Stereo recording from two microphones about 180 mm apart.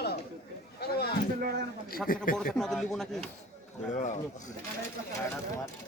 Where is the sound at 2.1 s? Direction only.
50° left (ahead or behind).